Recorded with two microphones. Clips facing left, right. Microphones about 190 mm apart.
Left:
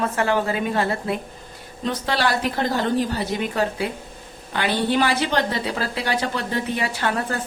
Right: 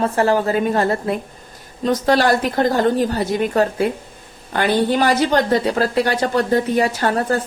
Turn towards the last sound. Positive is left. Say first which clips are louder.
# right 6 dB
turn(degrees=-40)  # may be behind; listen again after turning